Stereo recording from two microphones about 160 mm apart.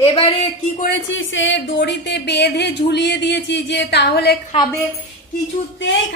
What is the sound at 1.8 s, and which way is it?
Speech, 90° left.